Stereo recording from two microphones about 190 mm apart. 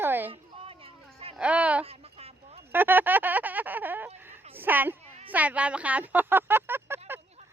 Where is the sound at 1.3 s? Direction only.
5° right (ahead or behind).